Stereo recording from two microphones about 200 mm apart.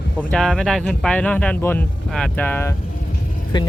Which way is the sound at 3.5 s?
20° left (ahead or behind).